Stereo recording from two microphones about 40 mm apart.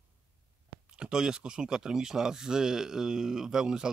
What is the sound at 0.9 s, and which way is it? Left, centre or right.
Speech, right.